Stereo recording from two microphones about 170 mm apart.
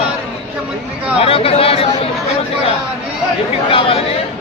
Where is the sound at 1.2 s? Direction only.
35° left (ahead or behind).